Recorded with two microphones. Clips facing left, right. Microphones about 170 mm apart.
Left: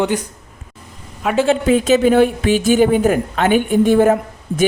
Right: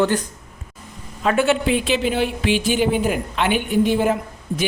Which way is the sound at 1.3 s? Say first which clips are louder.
Left 6 dB; 35° left (ahead or behind).